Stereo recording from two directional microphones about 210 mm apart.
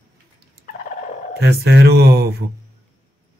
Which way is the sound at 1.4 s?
50° right (ahead or behind).